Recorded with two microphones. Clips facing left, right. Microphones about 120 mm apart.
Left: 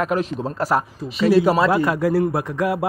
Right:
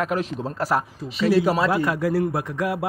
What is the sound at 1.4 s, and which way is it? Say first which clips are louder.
Speech: left 4 dB; 90° left.